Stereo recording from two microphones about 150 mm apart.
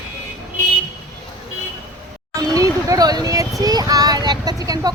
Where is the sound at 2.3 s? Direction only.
25° right (ahead or behind).